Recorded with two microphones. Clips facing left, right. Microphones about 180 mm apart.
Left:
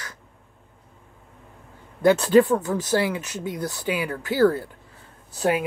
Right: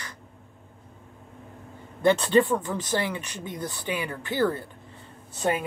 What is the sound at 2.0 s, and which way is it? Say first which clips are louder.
Speech: left 4 dB; 10° left (ahead or behind).